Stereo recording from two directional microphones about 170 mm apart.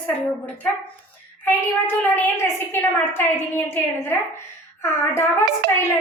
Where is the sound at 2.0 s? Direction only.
10° left (ahead or behind).